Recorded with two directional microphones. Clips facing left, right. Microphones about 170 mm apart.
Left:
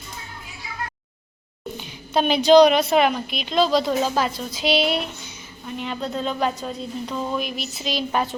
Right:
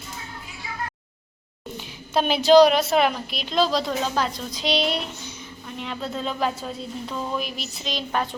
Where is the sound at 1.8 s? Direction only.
Centre (ahead or behind).